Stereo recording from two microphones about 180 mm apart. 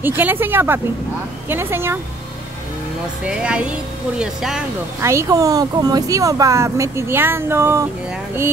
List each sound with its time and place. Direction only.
0.0 s speech: 10° right (ahead or behind)
3.3 s speech: 5° right (ahead or behind)
5.0 s speech: 20° right (ahead or behind)